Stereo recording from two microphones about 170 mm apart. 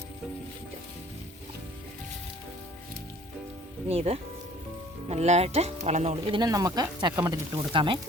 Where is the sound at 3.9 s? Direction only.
35° right (ahead or behind); by 7.4 s 20° right (ahead or behind).